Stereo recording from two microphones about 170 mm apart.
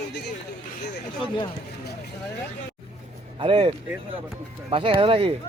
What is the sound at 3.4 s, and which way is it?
Speech, 30° right (ahead or behind).